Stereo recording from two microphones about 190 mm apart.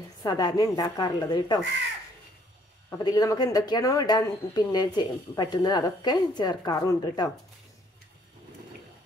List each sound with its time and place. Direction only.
0.2 s speech: 20° left (ahead or behind)
2.9 s speech: 20° left (ahead or behind)